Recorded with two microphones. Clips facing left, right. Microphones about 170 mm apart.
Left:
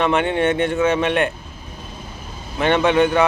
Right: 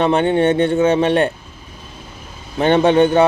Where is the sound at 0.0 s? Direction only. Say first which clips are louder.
Right 4 dB; 30° right (ahead or behind).